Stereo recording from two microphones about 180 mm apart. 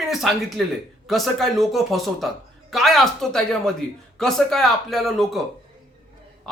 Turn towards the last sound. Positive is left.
turn(degrees=0)  # may be behind; listen again after turning